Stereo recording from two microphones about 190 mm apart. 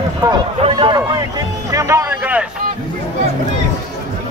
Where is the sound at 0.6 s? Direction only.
25° right (ahead or behind).